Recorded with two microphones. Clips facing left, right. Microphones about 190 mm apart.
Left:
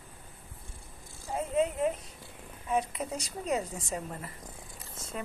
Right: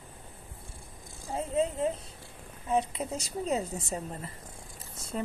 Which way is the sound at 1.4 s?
30° right (ahead or behind).